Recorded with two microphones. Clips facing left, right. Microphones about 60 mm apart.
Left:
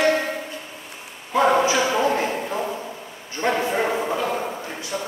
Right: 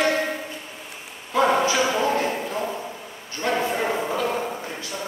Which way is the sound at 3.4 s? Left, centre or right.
Left.